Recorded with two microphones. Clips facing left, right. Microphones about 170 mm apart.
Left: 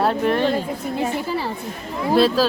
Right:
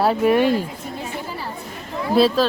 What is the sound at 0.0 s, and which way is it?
Speech, 5° right (ahead or behind).